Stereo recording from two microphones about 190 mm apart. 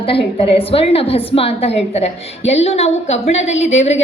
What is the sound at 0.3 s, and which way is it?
A woman's voice, 30° left (ahead or behind).